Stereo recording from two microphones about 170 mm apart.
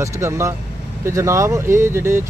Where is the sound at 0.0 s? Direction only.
15° right (ahead or behind).